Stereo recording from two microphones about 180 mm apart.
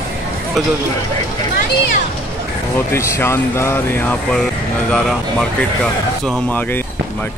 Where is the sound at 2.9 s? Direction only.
15° left (ahead or behind).